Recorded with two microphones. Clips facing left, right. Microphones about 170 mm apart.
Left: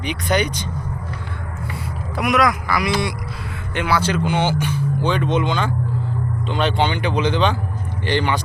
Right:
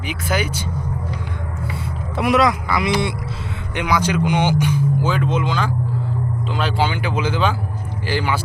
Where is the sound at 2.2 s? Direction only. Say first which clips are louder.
Right 2 dB; 25° right (ahead or behind).